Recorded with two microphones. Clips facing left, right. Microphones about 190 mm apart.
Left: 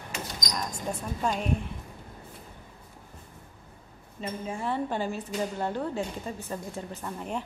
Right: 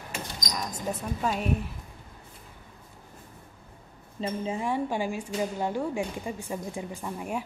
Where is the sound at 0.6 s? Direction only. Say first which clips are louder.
Right 1 dB; 5° right (ahead or behind).